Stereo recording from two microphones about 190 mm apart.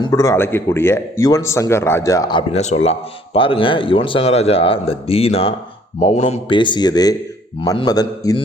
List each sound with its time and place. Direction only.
0.0 s a man's voice: 15° left (ahead or behind)
2.5 s speech: 35° left (ahead or behind); by 8.4 s 20° left (ahead or behind)